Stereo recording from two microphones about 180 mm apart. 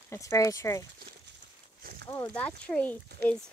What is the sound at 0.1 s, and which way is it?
Speech, 15° left (ahead or behind).